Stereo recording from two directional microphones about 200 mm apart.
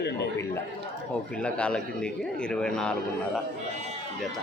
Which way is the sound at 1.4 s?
5° left (ahead or behind).